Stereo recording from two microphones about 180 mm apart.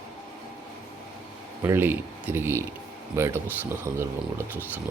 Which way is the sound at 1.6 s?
10° right (ahead or behind).